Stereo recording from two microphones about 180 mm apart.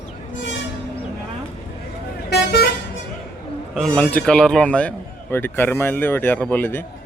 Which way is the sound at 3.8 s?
5° left (ahead or behind).